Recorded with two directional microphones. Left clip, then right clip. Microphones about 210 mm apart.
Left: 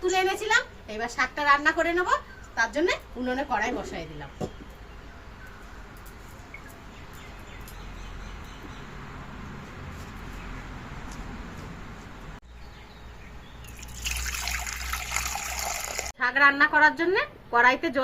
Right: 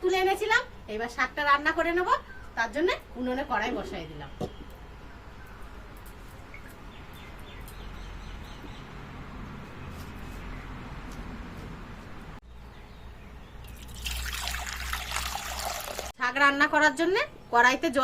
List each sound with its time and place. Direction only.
0.0 s a sound: 5° left (ahead or behind)
2.6 s a woman's voice: 5° left (ahead or behind)
14.4 s water: 5° right (ahead or behind)
16.1 s a woman's voice: 20° right (ahead or behind)